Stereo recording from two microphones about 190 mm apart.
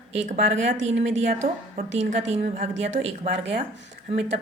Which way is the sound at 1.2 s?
35° right (ahead or behind).